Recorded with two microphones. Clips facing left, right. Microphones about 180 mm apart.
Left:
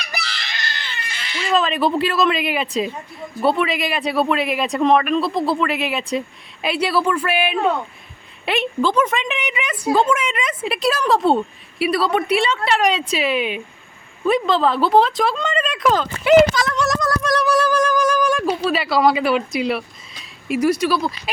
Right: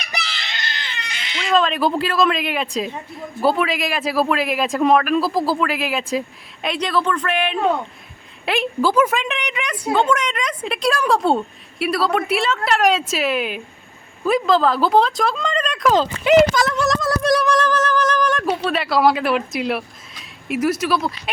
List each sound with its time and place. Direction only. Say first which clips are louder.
0.1 s baby cry: right 2 dB; 20° right (ahead or behind)
1.5 s speech: right 1 dB; centre (ahead or behind)
16.7 s a sound: even; 5° right (ahead or behind)
17.4 s speech: left 1 dB; 10° left (ahead or behind)